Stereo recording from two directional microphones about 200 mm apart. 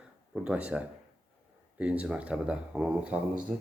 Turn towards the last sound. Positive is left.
turn(degrees=-5)  # may be behind; listen again after turning